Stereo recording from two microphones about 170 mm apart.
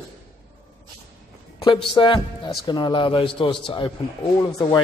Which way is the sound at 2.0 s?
30° left (ahead or behind).